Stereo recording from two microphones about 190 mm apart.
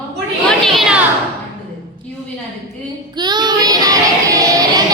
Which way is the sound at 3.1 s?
20° right (ahead or behind).